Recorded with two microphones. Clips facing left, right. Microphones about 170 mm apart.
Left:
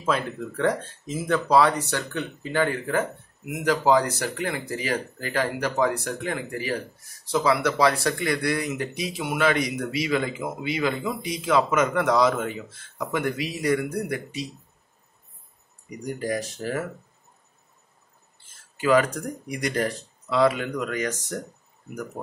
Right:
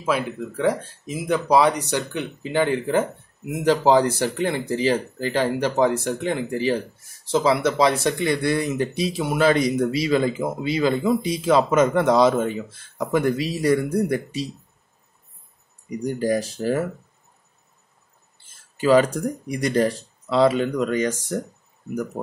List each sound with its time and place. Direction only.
0.0 s speech: 5° right (ahead or behind); by 14.5 s 30° right (ahead or behind)
16.0 s speech: 30° right (ahead or behind)
18.8 s speech: 30° right (ahead or behind)